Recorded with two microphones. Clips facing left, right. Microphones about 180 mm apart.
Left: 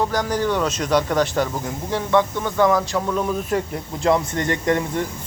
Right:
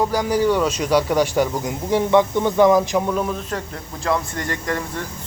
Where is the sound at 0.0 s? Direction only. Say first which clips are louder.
Right 3 dB; 10° right (ahead or behind).